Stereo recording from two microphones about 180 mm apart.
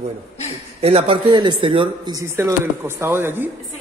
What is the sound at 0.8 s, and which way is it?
Speech, 35° right (ahead or behind).